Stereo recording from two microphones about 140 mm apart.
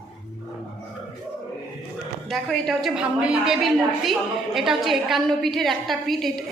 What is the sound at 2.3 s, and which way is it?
A woman's voice, centre (ahead or behind).